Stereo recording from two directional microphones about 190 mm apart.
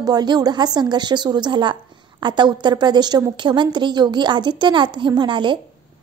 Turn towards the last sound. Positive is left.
turn(degrees=-25)  # may be behind; listen again after turning